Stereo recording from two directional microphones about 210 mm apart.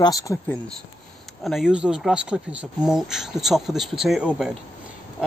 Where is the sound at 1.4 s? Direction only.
Centre (ahead or behind).